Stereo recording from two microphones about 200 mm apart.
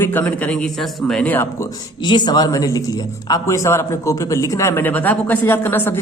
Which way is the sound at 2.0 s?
20° left (ahead or behind).